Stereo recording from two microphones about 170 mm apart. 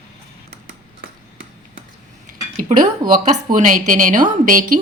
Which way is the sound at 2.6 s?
50° right (ahead or behind).